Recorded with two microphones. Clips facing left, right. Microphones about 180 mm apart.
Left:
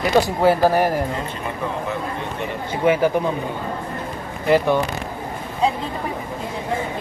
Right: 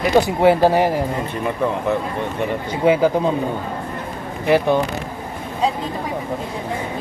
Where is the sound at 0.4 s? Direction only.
20° right (ahead or behind).